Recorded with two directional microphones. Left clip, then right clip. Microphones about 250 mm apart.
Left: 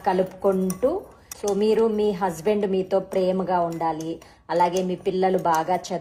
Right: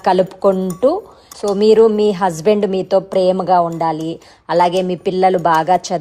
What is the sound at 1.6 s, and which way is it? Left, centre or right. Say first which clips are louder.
A woman's voice: right 11 dB; right.